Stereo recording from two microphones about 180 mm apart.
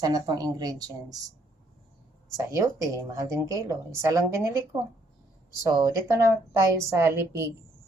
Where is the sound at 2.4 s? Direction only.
15° right (ahead or behind).